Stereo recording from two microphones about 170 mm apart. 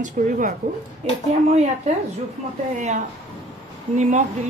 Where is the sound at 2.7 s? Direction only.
45° right (ahead or behind).